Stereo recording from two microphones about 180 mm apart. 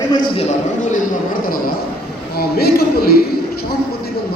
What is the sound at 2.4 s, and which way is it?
Speech, 60° left (ahead or behind).